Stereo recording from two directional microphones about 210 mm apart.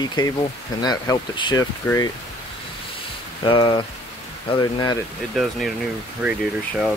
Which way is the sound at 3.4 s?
20° left (ahead or behind).